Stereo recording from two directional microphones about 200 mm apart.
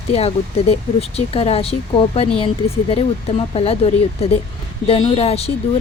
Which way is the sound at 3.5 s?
30° left (ahead or behind).